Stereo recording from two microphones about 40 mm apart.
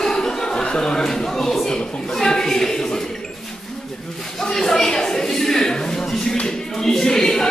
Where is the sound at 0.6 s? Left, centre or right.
Centre.